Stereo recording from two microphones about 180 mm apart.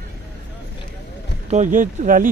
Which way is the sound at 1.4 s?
40° right (ahead or behind).